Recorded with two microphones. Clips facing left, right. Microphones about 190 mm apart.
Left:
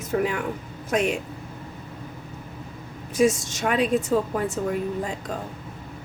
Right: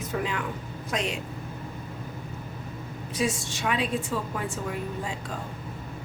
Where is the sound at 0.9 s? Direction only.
50° left (ahead or behind).